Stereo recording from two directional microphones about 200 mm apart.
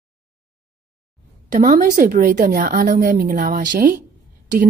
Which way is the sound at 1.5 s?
40° right (ahead or behind).